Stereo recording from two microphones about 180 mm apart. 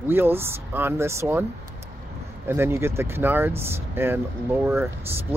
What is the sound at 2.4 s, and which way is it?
Speech, 15° right (ahead or behind).